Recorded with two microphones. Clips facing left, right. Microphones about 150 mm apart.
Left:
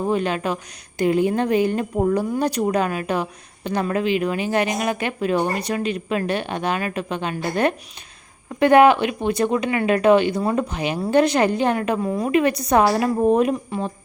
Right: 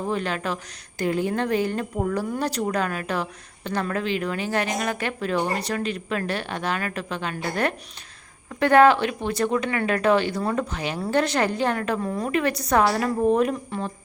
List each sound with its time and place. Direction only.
0.0 s speech: 15° left (ahead or behind)